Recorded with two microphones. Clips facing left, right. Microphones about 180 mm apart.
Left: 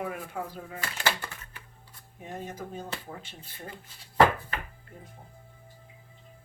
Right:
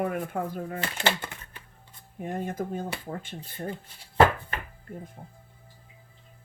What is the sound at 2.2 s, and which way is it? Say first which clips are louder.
Speech: right 7 dB; 50° right (ahead or behind).